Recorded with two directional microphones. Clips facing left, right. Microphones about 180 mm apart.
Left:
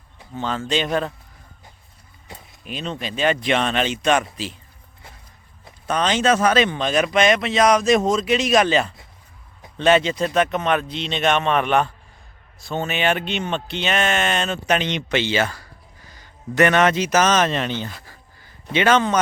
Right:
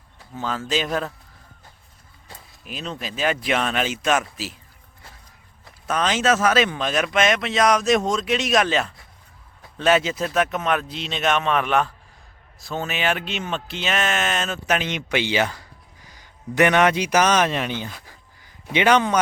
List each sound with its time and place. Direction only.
0.3 s speech: 5° right (ahead or behind)
2.6 s speech: centre (ahead or behind)
5.8 s speech: 5° right (ahead or behind)
18.0 s a sound: 15° right (ahead or behind)